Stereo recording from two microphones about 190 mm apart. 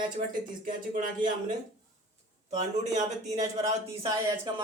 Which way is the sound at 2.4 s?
35° right (ahead or behind).